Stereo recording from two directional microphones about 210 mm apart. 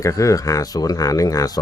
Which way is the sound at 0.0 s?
15° left (ahead or behind).